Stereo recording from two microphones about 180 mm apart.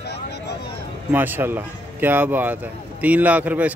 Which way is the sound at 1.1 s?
10° right (ahead or behind).